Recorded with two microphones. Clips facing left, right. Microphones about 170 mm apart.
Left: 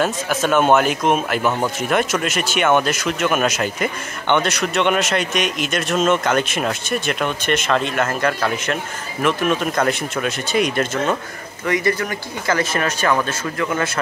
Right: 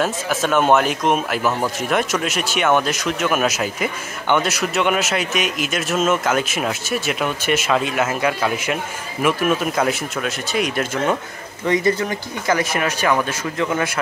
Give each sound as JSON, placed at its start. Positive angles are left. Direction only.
{"t": 0.0, "sound": "speech", "side_deg": 0}
{"t": 11.6, "sound": "speech", "side_deg": -25}